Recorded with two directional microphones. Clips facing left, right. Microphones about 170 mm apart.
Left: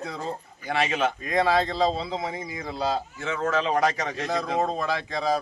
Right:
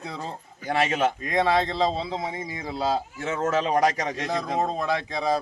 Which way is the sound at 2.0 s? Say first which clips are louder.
Even; centre (ahead or behind).